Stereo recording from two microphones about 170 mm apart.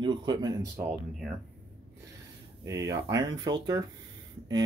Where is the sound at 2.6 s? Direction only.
20° right (ahead or behind).